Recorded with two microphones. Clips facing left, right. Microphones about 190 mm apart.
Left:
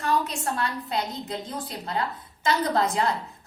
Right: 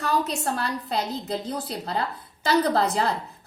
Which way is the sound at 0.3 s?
35° right (ahead or behind).